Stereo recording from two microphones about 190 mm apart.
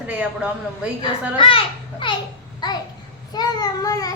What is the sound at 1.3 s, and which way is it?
A child's voice, 25° left (ahead or behind).